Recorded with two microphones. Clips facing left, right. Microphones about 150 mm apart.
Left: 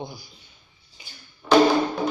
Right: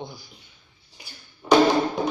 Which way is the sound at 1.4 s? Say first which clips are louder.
Even; 15° right (ahead or behind).